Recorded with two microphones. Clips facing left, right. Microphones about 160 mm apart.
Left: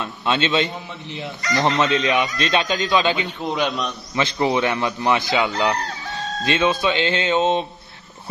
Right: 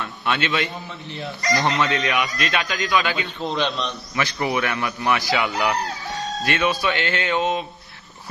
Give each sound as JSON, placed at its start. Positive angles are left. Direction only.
{"t": 0.0, "sound": "a man's voice", "side_deg": 25}
{"t": 3.4, "sound": "a man's voice", "side_deg": 10}
{"t": 4.1, "sound": "a man's voice", "side_deg": 25}